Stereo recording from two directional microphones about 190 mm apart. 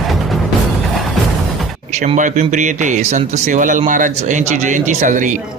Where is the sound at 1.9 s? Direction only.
40° right (ahead or behind).